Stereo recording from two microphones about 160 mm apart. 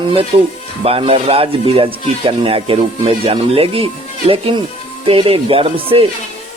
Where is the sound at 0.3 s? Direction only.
35° right (ahead or behind).